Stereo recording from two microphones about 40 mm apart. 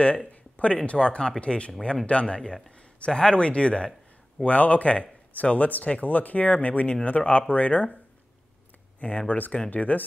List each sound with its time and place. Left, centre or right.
0.0 s speech: left
2.7 s a sound: left
3.1 s speech: centre
4.5 s speech: left
5.3 s speech: left
9.3 s speech: left